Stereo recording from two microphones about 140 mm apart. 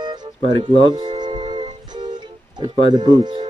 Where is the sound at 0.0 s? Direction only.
30° right (ahead or behind).